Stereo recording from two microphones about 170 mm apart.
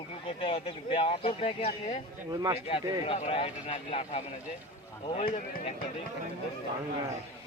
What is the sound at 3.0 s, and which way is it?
Speech, 40° left (ahead or behind).